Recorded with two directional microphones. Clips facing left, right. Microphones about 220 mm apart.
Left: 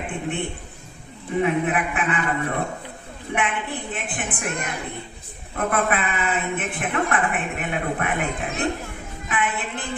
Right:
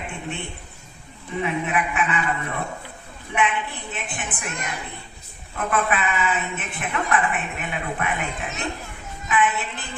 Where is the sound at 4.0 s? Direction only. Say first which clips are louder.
Left 3 dB; 50° left (ahead or behind).